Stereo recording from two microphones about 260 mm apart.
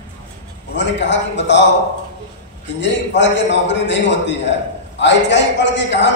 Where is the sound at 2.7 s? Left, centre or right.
Left.